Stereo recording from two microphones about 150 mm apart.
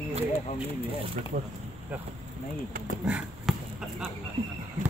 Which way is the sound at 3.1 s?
10° right (ahead or behind).